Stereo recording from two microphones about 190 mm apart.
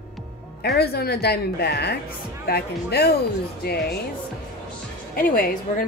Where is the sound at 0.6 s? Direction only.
55° left (ahead or behind).